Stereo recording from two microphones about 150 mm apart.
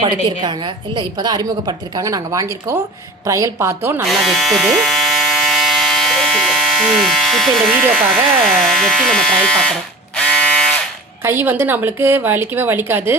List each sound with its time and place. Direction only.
0.0 s a woman's voice: 30° right (ahead or behind); by 4.0 s 15° right (ahead or behind)
4.0 s electric toothbrush: centre (ahead or behind)
7.6 s speech: 5° right (ahead or behind)
10.2 s a sound: 5° left (ahead or behind)
11.2 s a woman's voice: 15° right (ahead or behind)